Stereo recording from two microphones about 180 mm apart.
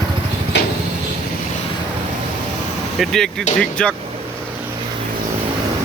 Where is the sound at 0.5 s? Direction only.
75° left (ahead or behind).